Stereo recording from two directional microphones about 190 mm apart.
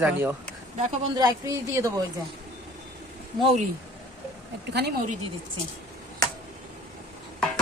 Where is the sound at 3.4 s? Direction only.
35° right (ahead or behind).